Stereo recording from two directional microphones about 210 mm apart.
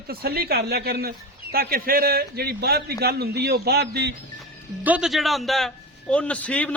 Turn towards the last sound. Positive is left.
turn(degrees=5)  # may be behind; listen again after turning